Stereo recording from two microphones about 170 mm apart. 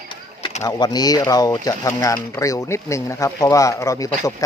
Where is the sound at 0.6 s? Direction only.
20° left (ahead or behind).